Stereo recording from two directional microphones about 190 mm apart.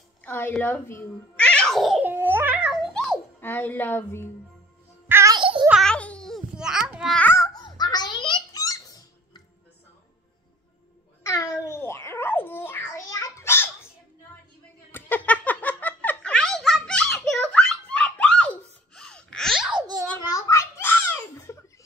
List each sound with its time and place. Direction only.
0.2 s a sound: 10° left (ahead or behind)
3.3 s a woman's voice: 10° left (ahead or behind)
5.0 s music: 15° right (ahead or behind)
5.7 s babbling: centre (ahead or behind); by 9.4 s 20° left (ahead or behind)
11.2 s babbling: 15° left (ahead or behind)
14.9 s giggle: 10° left (ahead or behind)
20.2 s a sound: 15° left (ahead or behind)